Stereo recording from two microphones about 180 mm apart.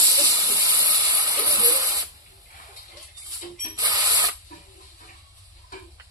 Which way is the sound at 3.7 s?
20° right (ahead or behind).